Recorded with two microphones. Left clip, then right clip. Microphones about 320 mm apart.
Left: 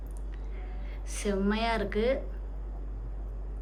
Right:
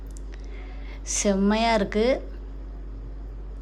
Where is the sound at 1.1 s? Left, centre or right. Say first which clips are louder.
Right 8 dB; centre.